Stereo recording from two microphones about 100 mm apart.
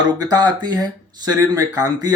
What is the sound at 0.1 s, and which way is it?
Speech, 40° right (ahead or behind).